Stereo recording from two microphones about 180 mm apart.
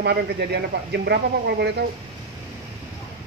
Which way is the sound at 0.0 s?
65° right (ahead or behind).